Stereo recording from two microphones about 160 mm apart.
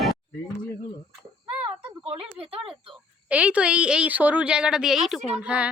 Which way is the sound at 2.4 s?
35° right (ahead or behind).